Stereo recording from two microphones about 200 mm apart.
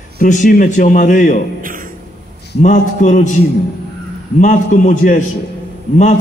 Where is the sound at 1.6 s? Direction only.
45° right (ahead or behind).